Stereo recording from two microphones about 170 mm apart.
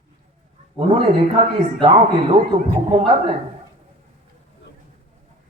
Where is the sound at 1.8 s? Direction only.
30° right (ahead or behind).